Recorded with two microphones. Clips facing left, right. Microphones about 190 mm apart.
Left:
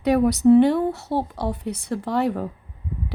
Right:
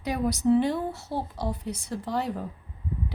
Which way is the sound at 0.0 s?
65° left (ahead or behind).